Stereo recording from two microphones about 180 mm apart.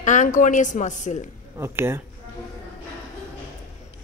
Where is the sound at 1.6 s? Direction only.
15° right (ahead or behind).